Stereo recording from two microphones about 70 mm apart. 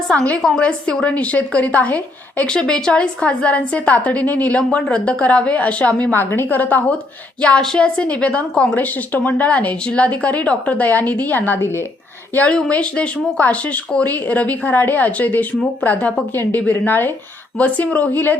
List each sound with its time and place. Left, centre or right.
0.1 s a woman's voice: centre
7.6 s speech: centre; by 11.9 s left
12.3 s speech: centre